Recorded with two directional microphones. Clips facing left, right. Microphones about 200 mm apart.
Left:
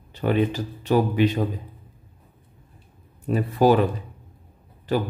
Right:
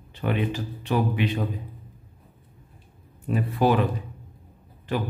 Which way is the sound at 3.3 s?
40° left (ahead or behind).